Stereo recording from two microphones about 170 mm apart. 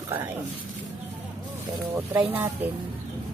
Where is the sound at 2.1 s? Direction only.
10° right (ahead or behind).